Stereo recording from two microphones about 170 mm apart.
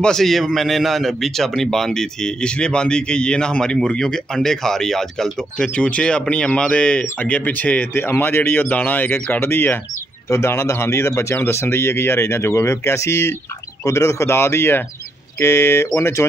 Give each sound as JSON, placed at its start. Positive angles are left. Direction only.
{"t": 0.0, "sound": "a man's voice", "side_deg": 0}